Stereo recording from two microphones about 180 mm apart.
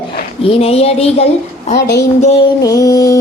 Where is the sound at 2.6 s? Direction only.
20° left (ahead or behind).